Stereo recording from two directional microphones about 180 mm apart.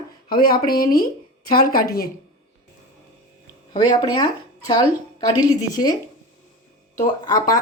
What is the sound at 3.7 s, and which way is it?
A woman's voice, 25° left (ahead or behind).